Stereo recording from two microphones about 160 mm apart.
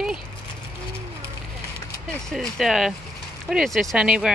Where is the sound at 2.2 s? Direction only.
Centre (ahead or behind).